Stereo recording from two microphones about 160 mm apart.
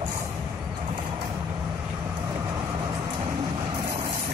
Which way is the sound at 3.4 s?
25° right (ahead or behind).